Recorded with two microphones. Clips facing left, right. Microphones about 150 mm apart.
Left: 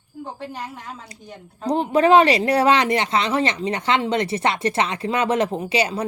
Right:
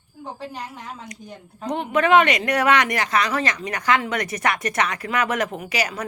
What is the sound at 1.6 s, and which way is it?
Speech, 35° left (ahead or behind).